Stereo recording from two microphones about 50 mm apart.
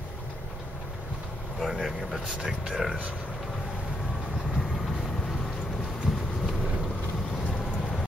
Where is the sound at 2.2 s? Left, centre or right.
Centre.